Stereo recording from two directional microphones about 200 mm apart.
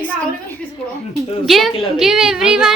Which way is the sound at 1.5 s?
Centre (ahead or behind).